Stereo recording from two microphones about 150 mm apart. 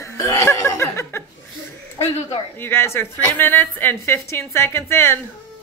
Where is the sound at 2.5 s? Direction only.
15° left (ahead or behind).